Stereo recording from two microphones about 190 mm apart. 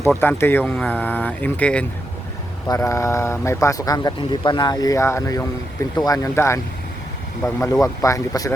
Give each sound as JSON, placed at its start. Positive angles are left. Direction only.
{"t": 0.1, "sound": "speech", "side_deg": 10}